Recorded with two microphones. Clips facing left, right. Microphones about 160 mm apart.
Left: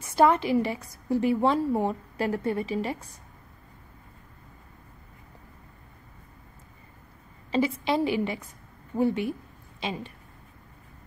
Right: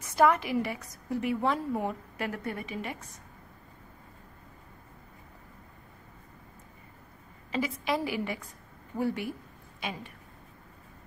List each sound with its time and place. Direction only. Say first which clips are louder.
0.1 s a woman's voice: left 3 dB; 30° left (ahead or behind)
7.5 s a woman's voice: left 5 dB; 30° left (ahead or behind)